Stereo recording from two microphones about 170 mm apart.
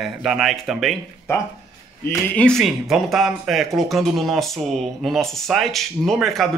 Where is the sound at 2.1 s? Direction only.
10° left (ahead or behind).